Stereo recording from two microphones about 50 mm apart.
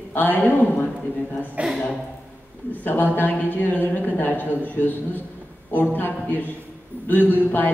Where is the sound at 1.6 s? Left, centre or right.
Right.